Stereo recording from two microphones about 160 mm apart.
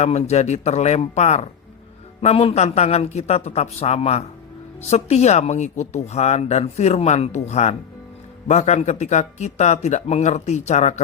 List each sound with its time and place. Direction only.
0.0 s speech: 40° left (ahead or behind)